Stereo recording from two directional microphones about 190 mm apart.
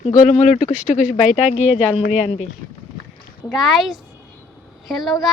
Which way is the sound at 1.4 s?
35° left (ahead or behind).